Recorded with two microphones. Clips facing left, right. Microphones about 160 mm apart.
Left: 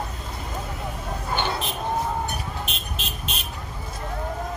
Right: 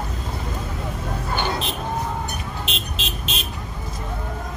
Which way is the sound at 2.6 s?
90° right.